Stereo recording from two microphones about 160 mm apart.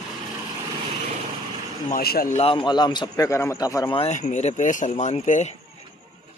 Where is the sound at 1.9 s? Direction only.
70° left (ahead or behind).